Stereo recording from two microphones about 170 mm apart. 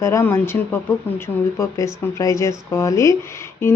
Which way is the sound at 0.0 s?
15° left (ahead or behind).